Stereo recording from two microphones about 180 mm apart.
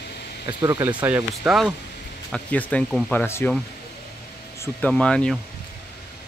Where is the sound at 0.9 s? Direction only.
10° right (ahead or behind).